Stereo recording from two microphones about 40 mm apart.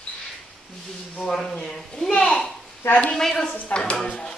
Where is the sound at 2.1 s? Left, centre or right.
Left.